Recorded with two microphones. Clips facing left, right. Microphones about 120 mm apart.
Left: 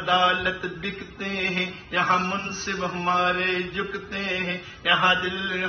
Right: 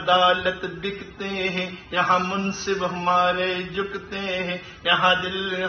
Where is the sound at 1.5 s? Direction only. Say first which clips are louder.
Right 1 dB; 15° right (ahead or behind).